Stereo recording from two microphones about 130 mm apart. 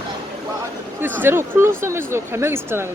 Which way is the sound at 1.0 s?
15° right (ahead or behind).